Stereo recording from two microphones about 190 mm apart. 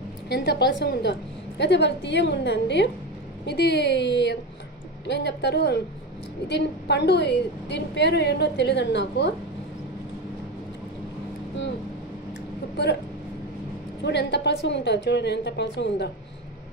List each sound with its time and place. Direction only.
0.3 s a woman's voice: 60° left (ahead or behind)
14.0 s a woman's voice: 65° left (ahead or behind)